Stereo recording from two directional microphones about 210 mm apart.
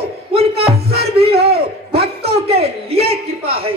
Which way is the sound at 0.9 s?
50° right (ahead or behind).